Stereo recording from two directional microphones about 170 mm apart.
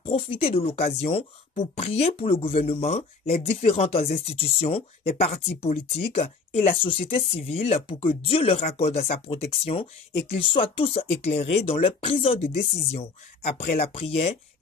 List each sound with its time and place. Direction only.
0.0 s speech: 30° left (ahead or behind)